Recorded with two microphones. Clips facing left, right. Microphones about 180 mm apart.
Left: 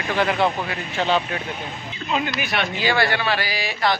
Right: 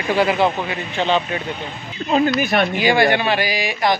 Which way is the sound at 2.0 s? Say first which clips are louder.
Right 8 dB; 45° right (ahead or behind).